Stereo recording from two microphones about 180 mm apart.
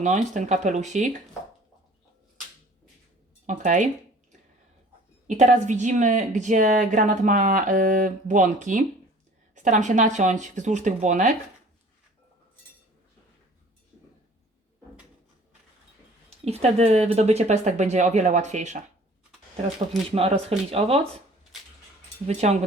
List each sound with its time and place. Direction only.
0.0 s speech: 40° right (ahead or behind)
3.4 s speech: 45° right (ahead or behind)
5.4 s speech: 40° right (ahead or behind)
16.4 s speech: 35° right (ahead or behind)
20.1 s speech: 30° right (ahead or behind)
22.3 s speech: 40° right (ahead or behind)